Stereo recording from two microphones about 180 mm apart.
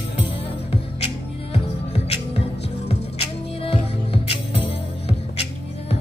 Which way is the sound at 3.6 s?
30° left (ahead or behind).